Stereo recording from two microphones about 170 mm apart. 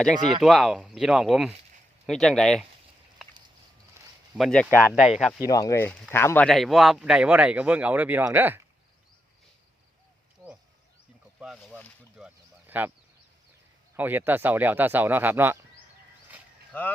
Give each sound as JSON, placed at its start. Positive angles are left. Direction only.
{"t": 0.2, "sound": "speech", "side_deg": -25}
{"t": 0.4, "sound": "speech", "side_deg": 0}
{"t": 3.2, "sound": "a sound", "side_deg": -5}
{"t": 4.0, "sound": "a sound", "side_deg": -15}
{"t": 4.4, "sound": "speech", "side_deg": 5}
{"t": 5.5, "sound": "speech", "side_deg": 20}
{"t": 11.3, "sound": "speech", "side_deg": -5}
{"t": 12.1, "sound": "a sound", "side_deg": -10}
{"t": 13.9, "sound": "speech", "side_deg": -10}
{"t": 16.7, "sound": "speech", "side_deg": 10}